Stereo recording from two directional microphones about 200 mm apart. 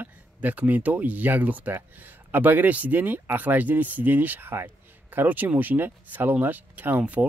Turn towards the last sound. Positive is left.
turn(degrees=-5)  # may be behind; listen again after turning